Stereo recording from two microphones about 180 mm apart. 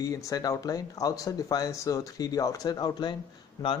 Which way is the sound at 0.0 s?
20° left (ahead or behind).